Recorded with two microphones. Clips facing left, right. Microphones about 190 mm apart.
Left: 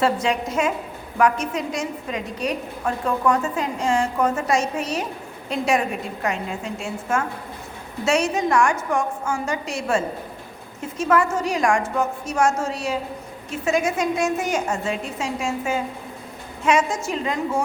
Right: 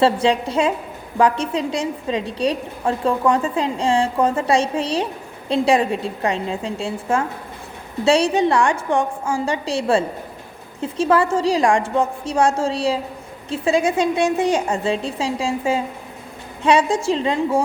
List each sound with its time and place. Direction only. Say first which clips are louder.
0.0 s a woman's voice: right 4 dB; 30° right (ahead or behind)